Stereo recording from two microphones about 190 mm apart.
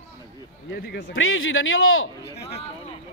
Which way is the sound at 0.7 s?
60° left (ahead or behind).